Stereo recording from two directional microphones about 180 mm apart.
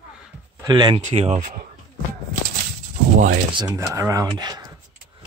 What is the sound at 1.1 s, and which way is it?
Speech, 35° right (ahead or behind).